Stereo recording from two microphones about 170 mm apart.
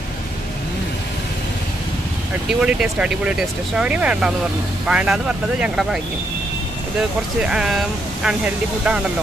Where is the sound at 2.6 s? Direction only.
5° right (ahead or behind).